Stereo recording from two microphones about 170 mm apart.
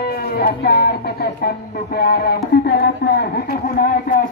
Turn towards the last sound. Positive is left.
turn(degrees=60)  # may be behind; listen again after turning